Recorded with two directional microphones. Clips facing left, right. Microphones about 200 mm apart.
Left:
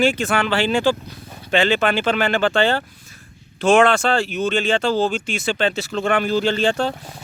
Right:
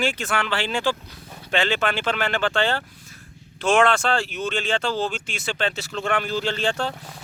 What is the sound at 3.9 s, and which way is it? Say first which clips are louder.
Speech: left 4 dB; 5° left (ahead or behind).